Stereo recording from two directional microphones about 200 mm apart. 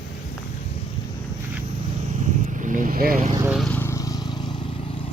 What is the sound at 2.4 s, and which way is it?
Vehicle, 40° right (ahead or behind).